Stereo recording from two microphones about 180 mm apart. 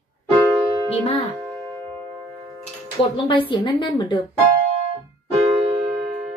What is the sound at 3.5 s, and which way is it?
Speech, 25° left (ahead or behind).